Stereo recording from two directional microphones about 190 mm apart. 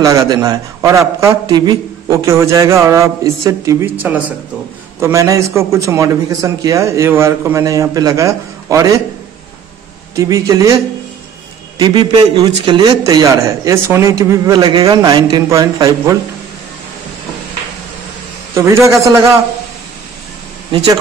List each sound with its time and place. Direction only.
0.0 s a man's voice: 15° right (ahead or behind)
10.1 s a man's voice: 15° right (ahead or behind)
11.8 s a man's voice: 25° right (ahead or behind)
18.5 s a man's voice: 15° right (ahead or behind)